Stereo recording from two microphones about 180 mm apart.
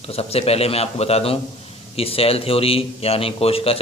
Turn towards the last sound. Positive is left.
turn(degrees=35)  # may be behind; listen again after turning